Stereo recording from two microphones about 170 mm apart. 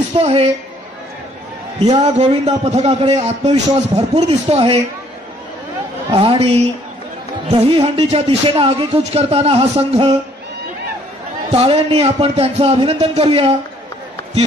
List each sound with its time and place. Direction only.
0.2 s a man's voice: 40° right (ahead or behind)
2.0 s a man's voice: 40° right (ahead or behind)
6.1 s a man's voice: 35° right (ahead or behind)
11.5 s a man's voice: 35° right (ahead or behind)